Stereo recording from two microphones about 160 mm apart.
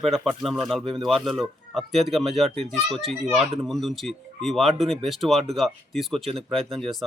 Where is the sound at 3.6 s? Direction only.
Centre (ahead or behind).